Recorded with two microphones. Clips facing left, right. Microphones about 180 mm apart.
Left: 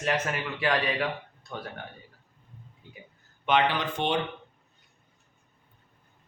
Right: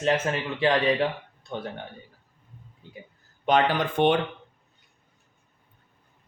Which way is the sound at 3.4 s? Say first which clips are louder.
Right 3 dB; 40° right (ahead or behind).